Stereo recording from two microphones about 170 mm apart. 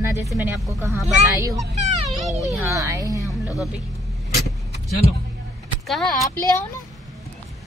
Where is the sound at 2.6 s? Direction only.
15° right (ahead or behind).